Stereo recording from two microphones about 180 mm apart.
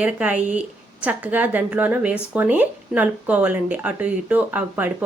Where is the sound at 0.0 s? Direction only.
10° right (ahead or behind).